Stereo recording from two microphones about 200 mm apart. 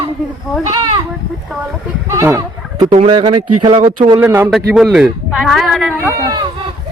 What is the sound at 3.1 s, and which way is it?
A man's voice, 20° right (ahead or behind).